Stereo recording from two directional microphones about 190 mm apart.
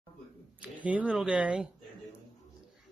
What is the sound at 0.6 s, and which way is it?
Speech, 5° right (ahead or behind).